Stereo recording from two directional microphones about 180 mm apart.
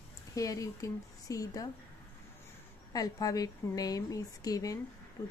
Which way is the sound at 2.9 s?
20° left (ahead or behind).